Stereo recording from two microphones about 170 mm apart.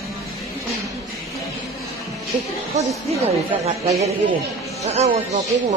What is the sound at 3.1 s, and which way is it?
Speech, 35° right (ahead or behind).